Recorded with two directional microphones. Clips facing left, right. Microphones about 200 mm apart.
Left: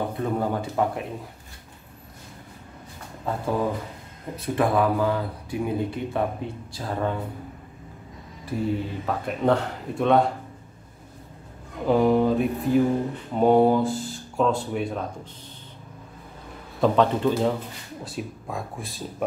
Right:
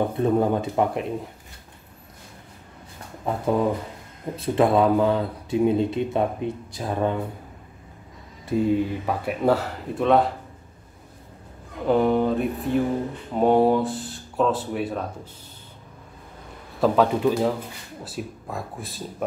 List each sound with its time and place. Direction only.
0.2 s speech: 20° right (ahead or behind)
3.3 s speech: 20° right (ahead or behind)
8.5 s speech: 15° right (ahead or behind); by 10.3 s centre (ahead or behind)
11.8 s speech: centre (ahead or behind)
16.8 s speech: 5° right (ahead or behind)